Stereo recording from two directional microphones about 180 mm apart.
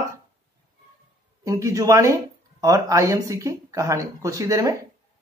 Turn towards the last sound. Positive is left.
turn(degrees=-20)  # may be behind; listen again after turning